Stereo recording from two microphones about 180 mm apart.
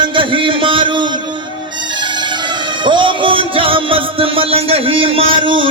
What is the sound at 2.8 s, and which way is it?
Music, 25° right (ahead or behind).